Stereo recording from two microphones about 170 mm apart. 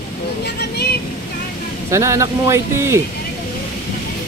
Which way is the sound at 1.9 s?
15° right (ahead or behind).